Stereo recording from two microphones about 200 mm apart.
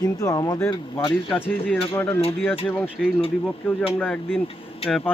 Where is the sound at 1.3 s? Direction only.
5° left (ahead or behind).